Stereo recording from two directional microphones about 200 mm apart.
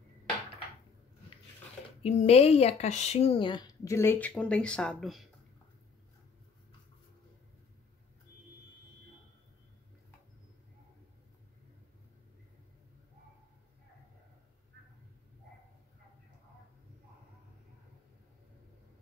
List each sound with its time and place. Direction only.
2.0 s speech: 30° left (ahead or behind); by 5.3 s centre (ahead or behind)